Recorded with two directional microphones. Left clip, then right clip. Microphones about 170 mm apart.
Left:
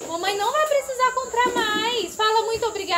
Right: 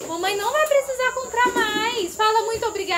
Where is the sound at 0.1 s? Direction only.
5° right (ahead or behind).